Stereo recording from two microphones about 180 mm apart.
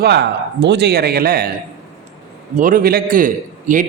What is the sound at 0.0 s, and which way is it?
A man's voice, 70° right (ahead or behind).